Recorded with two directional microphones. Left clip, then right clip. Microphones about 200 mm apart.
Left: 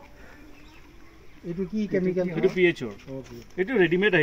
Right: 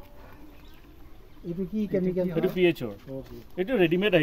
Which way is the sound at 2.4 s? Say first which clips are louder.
Left 2 dB; 50° right (ahead or behind).